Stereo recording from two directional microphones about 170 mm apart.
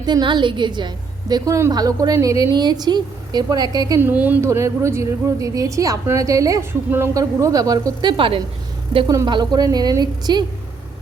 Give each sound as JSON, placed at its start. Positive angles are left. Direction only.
{"t": 0.0, "sound": "a woman's voice", "side_deg": -25}